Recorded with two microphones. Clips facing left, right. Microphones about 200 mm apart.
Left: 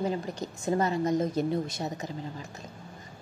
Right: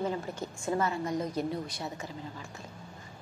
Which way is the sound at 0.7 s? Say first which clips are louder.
Left 4 dB; 40° left (ahead or behind).